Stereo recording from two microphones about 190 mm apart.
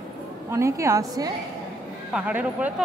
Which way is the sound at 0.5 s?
15° right (ahead or behind).